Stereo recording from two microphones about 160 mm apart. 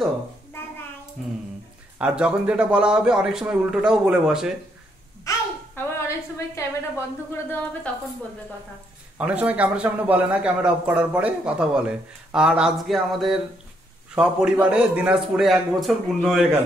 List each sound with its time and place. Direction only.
2.0 s a man's voice: 5° right (ahead or behind)
5.3 s a sound: 20° left (ahead or behind)
9.2 s a man's voice: 5° right (ahead or behind)